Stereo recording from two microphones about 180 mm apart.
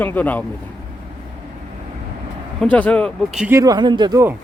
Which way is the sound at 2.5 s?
5° left (ahead or behind).